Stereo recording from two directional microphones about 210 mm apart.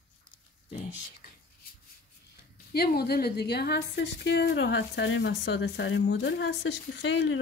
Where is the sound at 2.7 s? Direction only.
50° left (ahead or behind).